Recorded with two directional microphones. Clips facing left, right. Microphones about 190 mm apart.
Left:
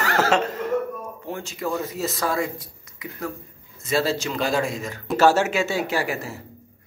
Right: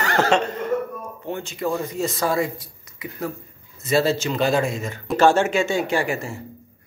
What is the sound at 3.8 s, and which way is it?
Speech, centre (ahead or behind).